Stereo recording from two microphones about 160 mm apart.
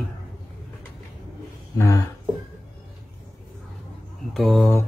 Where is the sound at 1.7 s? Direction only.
20° left (ahead or behind).